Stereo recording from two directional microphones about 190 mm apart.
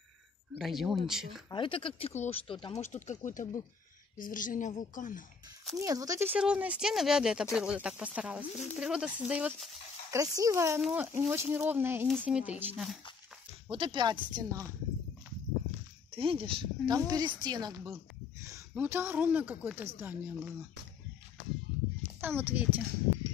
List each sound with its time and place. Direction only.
0.6 s speech: centre (ahead or behind)
1.5 s a woman's voice: 25° left (ahead or behind); by 5.2 s 40° left (ahead or behind)
5.8 s speech: 20° right (ahead or behind)
10.1 s speech: 15° right (ahead or behind)
13.7 s speech: 25° right (ahead or behind)
16.1 s speech: 30° right (ahead or behind); by 20.5 s 10° right (ahead or behind)
22.2 s speech: 10° right (ahead or behind)